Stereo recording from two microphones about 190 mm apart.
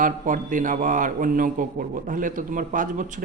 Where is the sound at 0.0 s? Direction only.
45° right (ahead or behind).